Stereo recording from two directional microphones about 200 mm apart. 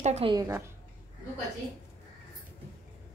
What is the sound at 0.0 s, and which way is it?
Speech, 30° right (ahead or behind).